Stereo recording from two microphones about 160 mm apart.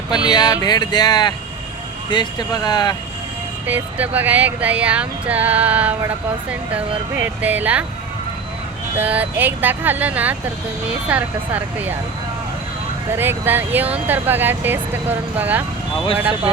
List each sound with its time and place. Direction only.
0.1 s speech: 25° left (ahead or behind)
3.7 s speech: 10° right (ahead or behind)
9.0 s speech: 10° right (ahead or behind)
13.1 s speech: 15° right (ahead or behind)